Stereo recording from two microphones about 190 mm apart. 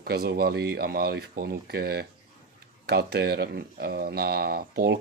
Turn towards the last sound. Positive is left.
turn(degrees=-55)  # may be behind; listen again after turning